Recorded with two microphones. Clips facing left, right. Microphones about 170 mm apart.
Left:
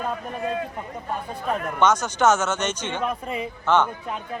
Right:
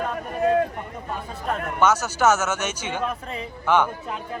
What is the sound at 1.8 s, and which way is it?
Speech, 5° right (ahead or behind).